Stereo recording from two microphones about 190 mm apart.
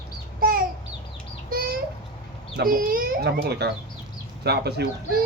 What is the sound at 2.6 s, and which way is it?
A child's voice, 50° right (ahead or behind).